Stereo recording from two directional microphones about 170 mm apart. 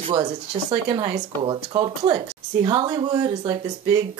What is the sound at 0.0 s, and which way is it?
Speech, 30° right (ahead or behind).